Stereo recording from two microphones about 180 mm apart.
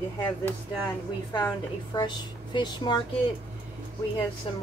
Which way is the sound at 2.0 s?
25° left (ahead or behind).